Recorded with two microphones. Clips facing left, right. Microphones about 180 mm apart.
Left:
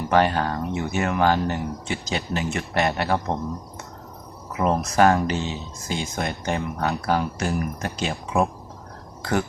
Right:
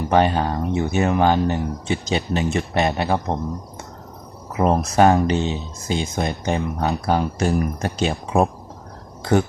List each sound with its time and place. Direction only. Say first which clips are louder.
0.1 s speech: right 2 dB; 20° right (ahead or behind)
4.6 s speech: right 3 dB; 30° right (ahead or behind)